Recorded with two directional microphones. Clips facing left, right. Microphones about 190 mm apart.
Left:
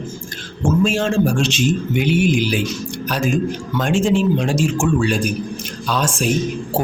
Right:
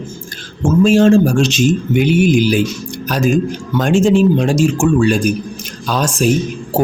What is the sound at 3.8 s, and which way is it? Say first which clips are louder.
Speech: right 6 dB; 45° right (ahead or behind).